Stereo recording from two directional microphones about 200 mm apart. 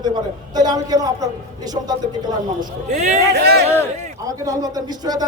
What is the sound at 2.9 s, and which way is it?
Speech, 35° right (ahead or behind).